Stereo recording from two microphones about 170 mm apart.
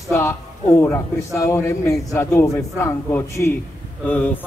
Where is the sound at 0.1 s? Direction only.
15° left (ahead or behind).